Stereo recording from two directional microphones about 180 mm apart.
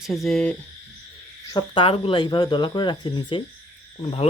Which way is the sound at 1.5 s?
30° left (ahead or behind).